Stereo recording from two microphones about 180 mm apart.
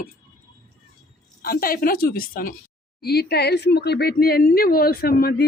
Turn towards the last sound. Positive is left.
turn(degrees=60)  # may be behind; listen again after turning